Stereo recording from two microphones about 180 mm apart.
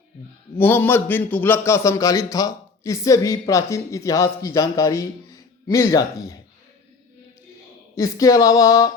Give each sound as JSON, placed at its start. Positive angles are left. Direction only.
{"t": 0.5, "sound": "a man's voice", "side_deg": 10}
{"t": 7.9, "sound": "a man's voice", "side_deg": 20}